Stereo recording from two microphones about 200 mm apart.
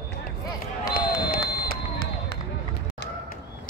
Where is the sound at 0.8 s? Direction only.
50° left (ahead or behind).